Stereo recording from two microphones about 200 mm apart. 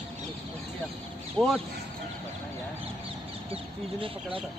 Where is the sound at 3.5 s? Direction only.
25° right (ahead or behind).